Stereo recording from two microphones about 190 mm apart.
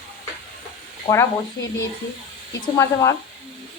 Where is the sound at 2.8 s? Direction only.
15° left (ahead or behind).